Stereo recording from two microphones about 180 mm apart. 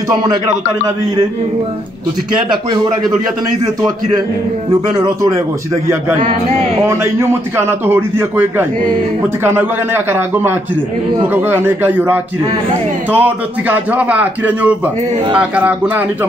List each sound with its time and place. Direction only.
2.7 s a man's voice: 25° right (ahead or behind)
4.9 s a man's voice: 20° right (ahead or behind)
6.9 s a man's voice: 15° right (ahead or behind)